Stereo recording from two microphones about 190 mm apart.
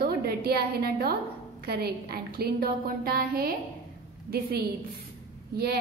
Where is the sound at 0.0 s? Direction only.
55° right (ahead or behind).